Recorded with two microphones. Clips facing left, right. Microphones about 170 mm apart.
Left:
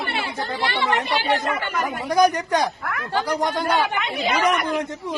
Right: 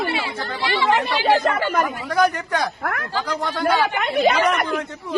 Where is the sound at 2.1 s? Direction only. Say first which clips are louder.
Left 3 dB; 15° left (ahead or behind).